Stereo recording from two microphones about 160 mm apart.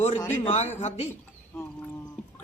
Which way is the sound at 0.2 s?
10° left (ahead or behind).